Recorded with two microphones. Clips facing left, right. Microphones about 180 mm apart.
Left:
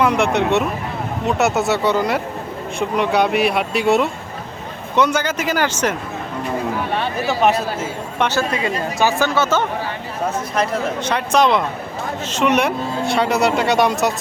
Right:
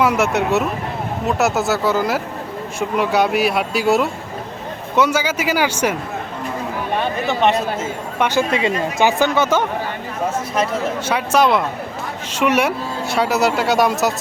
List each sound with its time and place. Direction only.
0.0 s speech: 5° right (ahead or behind)
8.2 s speech: 15° right (ahead or behind)